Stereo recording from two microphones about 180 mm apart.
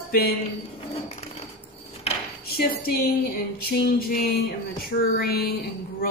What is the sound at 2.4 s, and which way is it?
A woman's voice, 60° left (ahead or behind).